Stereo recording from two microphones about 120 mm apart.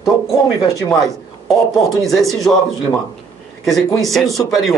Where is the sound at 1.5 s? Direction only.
Centre (ahead or behind).